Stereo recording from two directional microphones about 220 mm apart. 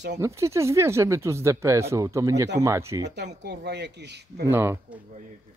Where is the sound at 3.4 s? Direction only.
50° right (ahead or behind).